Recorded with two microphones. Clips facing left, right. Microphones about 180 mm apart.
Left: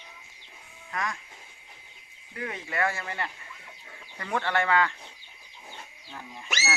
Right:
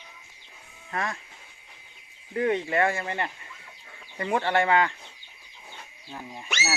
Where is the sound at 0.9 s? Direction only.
30° right (ahead or behind).